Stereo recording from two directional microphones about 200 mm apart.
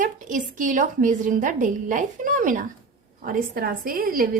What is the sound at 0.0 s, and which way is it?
A woman's voice, 40° right (ahead or behind).